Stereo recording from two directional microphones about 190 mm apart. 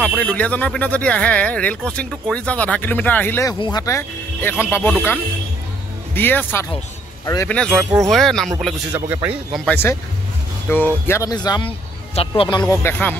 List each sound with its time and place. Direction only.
0.0 s speech: 5° left (ahead or behind)
3.5 s speech: 20° left (ahead or behind)
6.1 s speech: 10° left (ahead or behind)
7.5 s speech: 5° left (ahead or behind)
8.9 s speech: 10° right (ahead or behind)
9.7 s speech: 10° left (ahead or behind)